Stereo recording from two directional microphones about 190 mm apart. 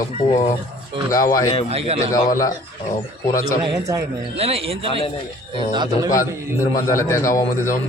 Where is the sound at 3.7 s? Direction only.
15° right (ahead or behind).